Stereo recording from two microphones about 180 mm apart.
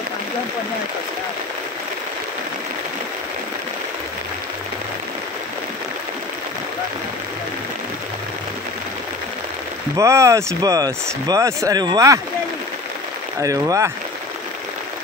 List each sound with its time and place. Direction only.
9.9 s speech: 15° right (ahead or behind)
13.4 s speech: 20° right (ahead or behind)